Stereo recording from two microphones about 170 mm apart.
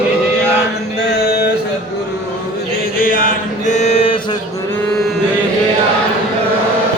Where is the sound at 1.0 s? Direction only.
75° left (ahead or behind).